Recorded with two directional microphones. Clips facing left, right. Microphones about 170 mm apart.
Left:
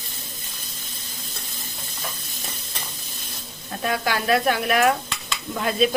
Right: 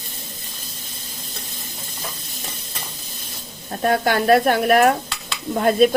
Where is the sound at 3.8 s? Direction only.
50° right (ahead or behind).